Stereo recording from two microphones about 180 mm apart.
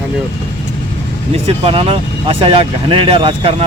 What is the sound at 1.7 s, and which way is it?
Speech, 30° right (ahead or behind).